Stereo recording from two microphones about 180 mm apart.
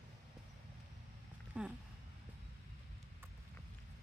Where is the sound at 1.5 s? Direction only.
5° right (ahead or behind).